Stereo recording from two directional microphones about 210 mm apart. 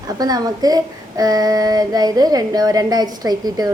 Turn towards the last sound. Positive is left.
turn(degrees=-20)  # may be behind; listen again after turning